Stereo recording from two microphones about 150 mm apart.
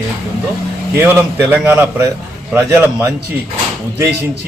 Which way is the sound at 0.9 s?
15° right (ahead or behind).